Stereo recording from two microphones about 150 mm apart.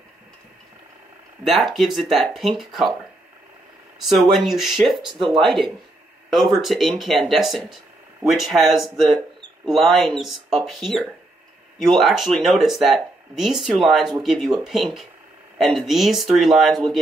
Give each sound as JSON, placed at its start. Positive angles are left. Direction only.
{"t": 1.4, "sound": "speech", "side_deg": 0}
{"t": 4.0, "sound": "speech", "side_deg": 0}
{"t": 5.0, "sound": "speech", "side_deg": -30}
{"t": 6.3, "sound": "speech", "side_deg": 0}